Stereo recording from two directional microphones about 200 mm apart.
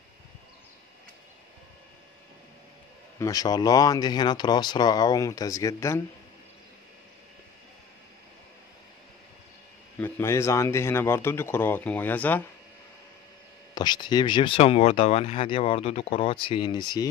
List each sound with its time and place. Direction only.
3.2 s speech: 20° left (ahead or behind)
9.9 s speech: 10° left (ahead or behind)
13.7 s speech: 20° left (ahead or behind)